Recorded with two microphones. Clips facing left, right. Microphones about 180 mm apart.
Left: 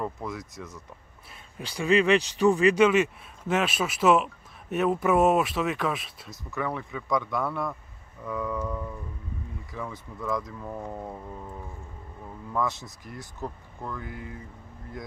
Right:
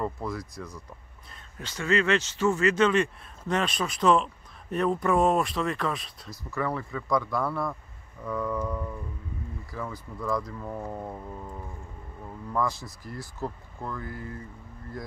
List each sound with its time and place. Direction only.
0.0 s speech: centre (ahead or behind)
1.6 s speech: 15° left (ahead or behind)
12.6 s speech: 20° left (ahead or behind)
13.4 s speech: centre (ahead or behind)